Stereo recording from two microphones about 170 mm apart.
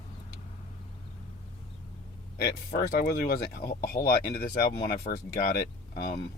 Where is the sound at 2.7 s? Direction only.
60° left (ahead or behind).